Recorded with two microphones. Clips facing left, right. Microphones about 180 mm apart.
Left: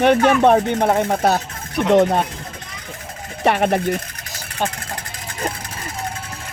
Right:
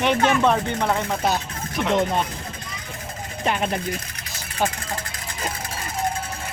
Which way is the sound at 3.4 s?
65° left (ahead or behind).